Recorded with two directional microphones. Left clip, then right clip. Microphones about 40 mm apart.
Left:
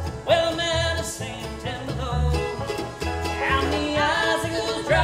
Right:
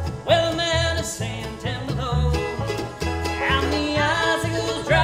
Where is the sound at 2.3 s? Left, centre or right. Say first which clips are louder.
Right 1 dB; left.